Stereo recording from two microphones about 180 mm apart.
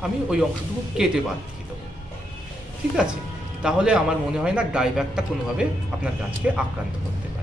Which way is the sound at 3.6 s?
5° right (ahead or behind).